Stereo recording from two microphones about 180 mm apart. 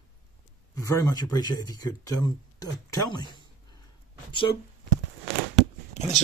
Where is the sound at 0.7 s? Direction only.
20° left (ahead or behind).